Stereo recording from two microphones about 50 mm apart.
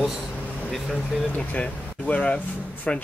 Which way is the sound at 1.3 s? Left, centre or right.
Left.